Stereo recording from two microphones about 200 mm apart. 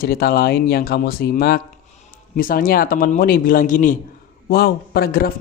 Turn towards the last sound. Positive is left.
turn(degrees=50)  # may be behind; listen again after turning